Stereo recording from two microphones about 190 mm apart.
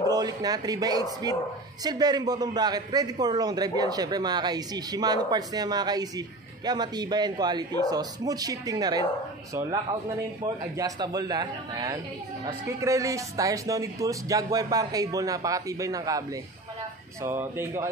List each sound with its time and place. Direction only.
0.1 s a man's voice: 20° right (ahead or behind)